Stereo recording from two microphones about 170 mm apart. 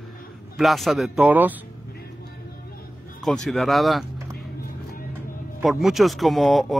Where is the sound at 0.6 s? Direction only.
Centre (ahead or behind).